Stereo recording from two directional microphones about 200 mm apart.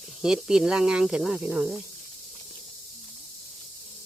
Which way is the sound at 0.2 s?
5° right (ahead or behind).